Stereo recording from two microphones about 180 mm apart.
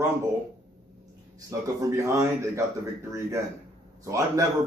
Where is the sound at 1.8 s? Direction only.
15° right (ahead or behind).